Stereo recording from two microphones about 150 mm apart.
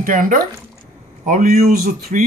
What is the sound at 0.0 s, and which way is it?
Speech, 60° right (ahead or behind).